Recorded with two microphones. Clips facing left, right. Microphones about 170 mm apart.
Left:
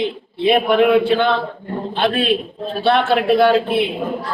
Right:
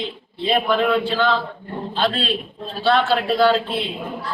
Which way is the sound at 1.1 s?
60° left (ahead or behind).